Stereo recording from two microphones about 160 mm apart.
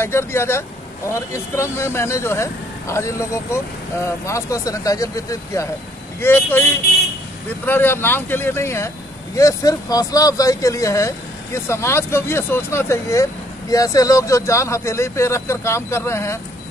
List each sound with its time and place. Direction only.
0.0 s speech: 15° left (ahead or behind)
7.6 s speech: 15° left (ahead or behind)